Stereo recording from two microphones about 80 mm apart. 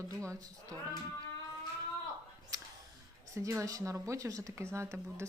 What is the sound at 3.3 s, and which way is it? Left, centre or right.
Speech, right.